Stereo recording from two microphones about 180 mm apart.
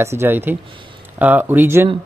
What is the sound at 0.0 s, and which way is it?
Speech, 15° right (ahead or behind).